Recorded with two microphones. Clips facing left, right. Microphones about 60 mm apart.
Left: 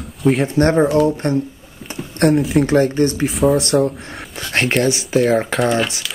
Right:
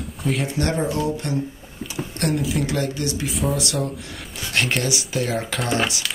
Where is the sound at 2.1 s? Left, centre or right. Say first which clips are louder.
Left 9 dB; left.